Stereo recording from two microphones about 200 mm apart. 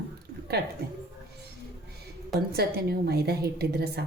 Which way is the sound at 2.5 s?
50° right (ahead or behind).